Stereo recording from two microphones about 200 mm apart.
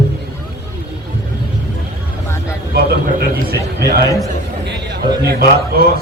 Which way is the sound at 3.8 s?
55° right (ahead or behind).